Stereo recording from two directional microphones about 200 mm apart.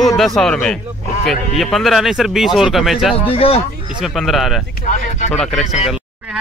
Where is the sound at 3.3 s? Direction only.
30° left (ahead or behind).